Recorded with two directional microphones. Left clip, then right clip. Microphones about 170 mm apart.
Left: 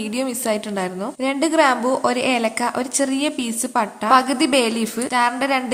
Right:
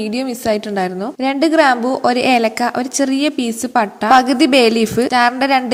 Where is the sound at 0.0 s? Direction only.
20° right (ahead or behind).